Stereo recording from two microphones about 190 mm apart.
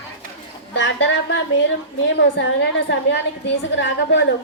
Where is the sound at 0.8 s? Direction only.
75° left (ahead or behind).